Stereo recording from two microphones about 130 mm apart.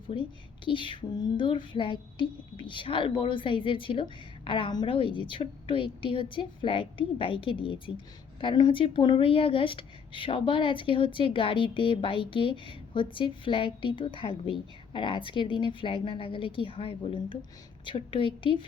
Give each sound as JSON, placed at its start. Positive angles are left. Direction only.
{"t": 0.1, "sound": "speech", "side_deg": 40}